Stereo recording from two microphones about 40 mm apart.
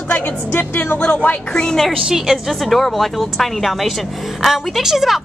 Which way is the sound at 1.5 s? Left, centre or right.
Centre.